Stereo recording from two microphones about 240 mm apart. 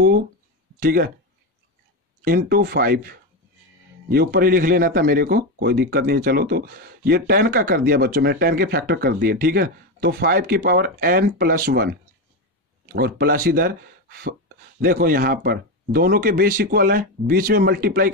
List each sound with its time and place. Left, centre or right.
0.7 s a man's voice: right
2.2 s a man's voice: right